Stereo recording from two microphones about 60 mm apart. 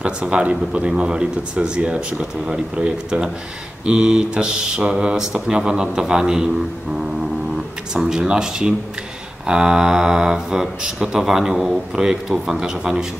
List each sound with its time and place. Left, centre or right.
0.0 s speech: centre
7.9 s speech: centre